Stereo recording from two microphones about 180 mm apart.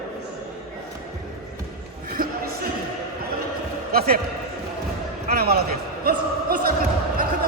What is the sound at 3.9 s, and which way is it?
Speech, 55° right (ahead or behind).